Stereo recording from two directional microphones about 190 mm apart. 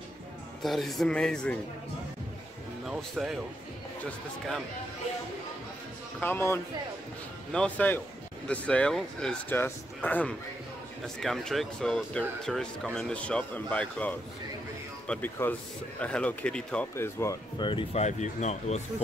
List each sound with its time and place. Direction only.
0.6 s speech: centre (ahead or behind)
2.8 s speech: centre (ahead or behind)
6.1 s speech: 10° left (ahead or behind); by 19.0 s 35° left (ahead or behind)